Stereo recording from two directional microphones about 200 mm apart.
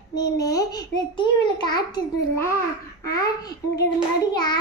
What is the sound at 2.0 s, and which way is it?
Speech, 20° left (ahead or behind).